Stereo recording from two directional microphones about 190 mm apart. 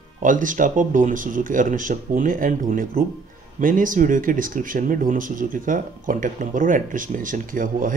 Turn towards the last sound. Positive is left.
turn(degrees=-45)  # may be behind; listen again after turning